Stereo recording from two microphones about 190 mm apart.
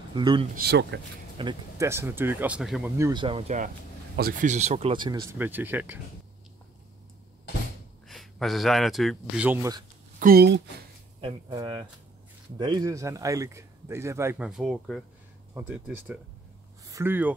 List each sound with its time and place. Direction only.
0.1 s speech: 25° right (ahead or behind)
0.6 s speech: 60° right (ahead or behind)
1.4 s speech: 25° right (ahead or behind)
1.9 s speech: 10° right (ahead or behind)
3.0 s speech: 20° right (ahead or behind)
5.4 s speech: 10° right (ahead or behind)
8.1 s speech: centre (ahead or behind)
9.5 s speech: 15° right (ahead or behind)
10.1 s speech: 50° right (ahead or behind)
11.1 s speech: 25° right (ahead or behind)
14.5 s speech: centre (ahead or behind)
16.8 s a sound: 15° right (ahead or behind)